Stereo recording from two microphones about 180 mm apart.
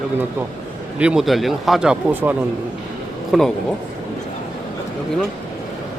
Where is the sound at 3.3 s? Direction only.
Centre (ahead or behind).